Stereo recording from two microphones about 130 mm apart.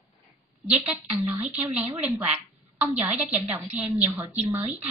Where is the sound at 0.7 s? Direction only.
15° right (ahead or behind).